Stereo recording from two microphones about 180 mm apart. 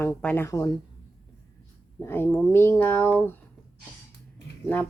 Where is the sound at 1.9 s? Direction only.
15° left (ahead or behind).